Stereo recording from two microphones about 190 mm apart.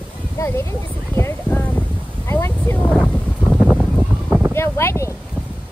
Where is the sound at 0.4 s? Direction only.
15° left (ahead or behind); by 4.5 s 5° right (ahead or behind).